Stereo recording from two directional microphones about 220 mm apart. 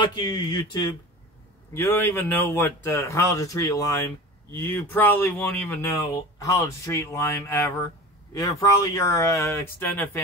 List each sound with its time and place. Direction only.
0.0 s speech: 20° left (ahead or behind)